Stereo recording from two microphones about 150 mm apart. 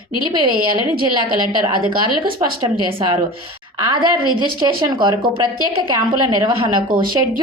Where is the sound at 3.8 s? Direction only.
30° right (ahead or behind).